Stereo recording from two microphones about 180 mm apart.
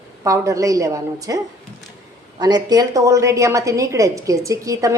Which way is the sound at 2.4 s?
25° right (ahead or behind).